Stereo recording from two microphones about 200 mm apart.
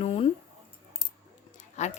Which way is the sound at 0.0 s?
30° left (ahead or behind).